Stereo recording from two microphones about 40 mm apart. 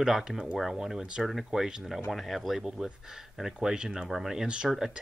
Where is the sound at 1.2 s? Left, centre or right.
Centre.